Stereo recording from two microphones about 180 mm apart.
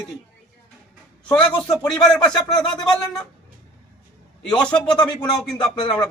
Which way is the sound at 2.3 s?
5° left (ahead or behind).